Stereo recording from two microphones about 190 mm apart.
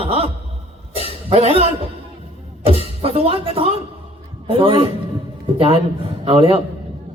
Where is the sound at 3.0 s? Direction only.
30° right (ahead or behind).